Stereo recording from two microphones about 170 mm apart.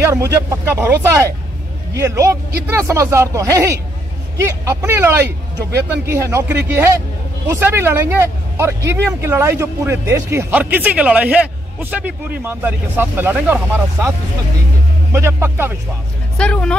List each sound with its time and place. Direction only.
0.0 s speech: 15° right (ahead or behind)
15.1 s speech: 15° right (ahead or behind)
16.3 s speech: 5° left (ahead or behind)